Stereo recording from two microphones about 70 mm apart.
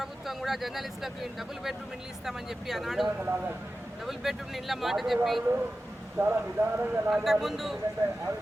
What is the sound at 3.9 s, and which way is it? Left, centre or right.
Speech, centre.